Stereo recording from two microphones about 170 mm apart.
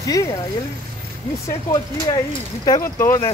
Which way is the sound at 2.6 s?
20° left (ahead or behind).